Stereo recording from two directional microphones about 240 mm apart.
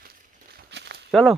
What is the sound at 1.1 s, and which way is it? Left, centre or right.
Speech, centre.